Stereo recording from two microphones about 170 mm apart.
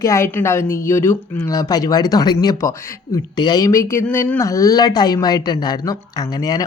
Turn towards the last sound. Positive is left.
turn(degrees=20)  # may be behind; listen again after turning